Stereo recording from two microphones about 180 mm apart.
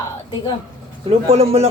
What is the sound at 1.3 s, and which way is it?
Speech, 35° right (ahead or behind).